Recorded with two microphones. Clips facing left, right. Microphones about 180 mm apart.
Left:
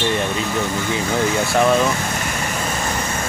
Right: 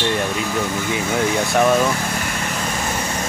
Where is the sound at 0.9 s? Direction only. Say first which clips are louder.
Even; 10° right (ahead or behind).